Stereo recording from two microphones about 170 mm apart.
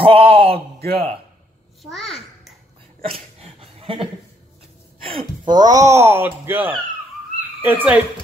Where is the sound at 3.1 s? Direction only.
35° right (ahead or behind).